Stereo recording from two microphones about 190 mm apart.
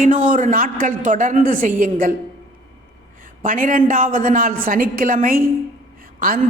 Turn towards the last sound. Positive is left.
turn(degrees=-45)  # may be behind; listen again after turning